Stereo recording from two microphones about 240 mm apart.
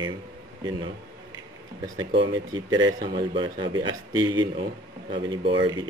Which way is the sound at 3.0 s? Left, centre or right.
Centre.